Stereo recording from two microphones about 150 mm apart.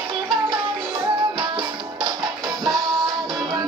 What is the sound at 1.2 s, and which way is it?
Music, 30° right (ahead or behind).